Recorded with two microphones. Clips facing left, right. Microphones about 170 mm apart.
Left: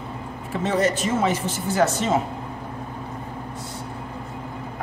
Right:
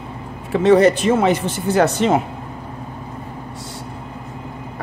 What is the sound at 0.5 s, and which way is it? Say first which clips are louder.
Speech: right 10 dB; 70° right (ahead or behind).